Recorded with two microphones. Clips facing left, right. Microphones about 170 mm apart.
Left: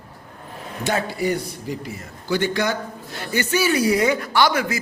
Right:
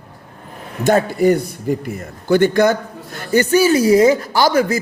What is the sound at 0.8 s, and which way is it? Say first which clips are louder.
Speech: right 9 dB; 50° right (ahead or behind).